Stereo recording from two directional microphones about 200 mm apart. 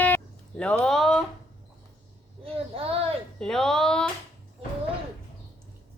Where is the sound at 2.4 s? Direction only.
30° right (ahead or behind).